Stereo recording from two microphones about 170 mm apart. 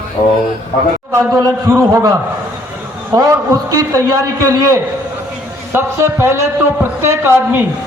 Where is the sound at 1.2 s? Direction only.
15° right (ahead or behind).